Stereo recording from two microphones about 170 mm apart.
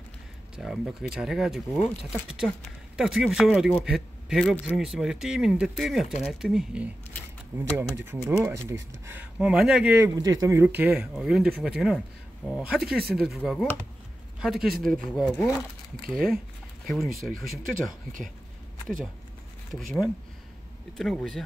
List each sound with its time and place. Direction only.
0.6 s a man's voice: centre (ahead or behind)
10.2 s a man's voice: 20° right (ahead or behind); by 17.9 s centre (ahead or behind)
19.7 s a man's voice: centre (ahead or behind)